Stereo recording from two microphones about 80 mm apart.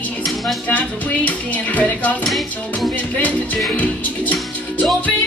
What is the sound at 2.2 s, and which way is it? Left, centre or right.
Music, centre.